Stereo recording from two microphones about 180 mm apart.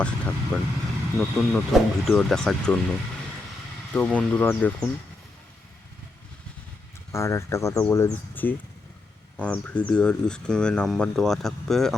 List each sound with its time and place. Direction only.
0.0 s speech: 5° left (ahead or behind)
7.1 s speech: 15° left (ahead or behind)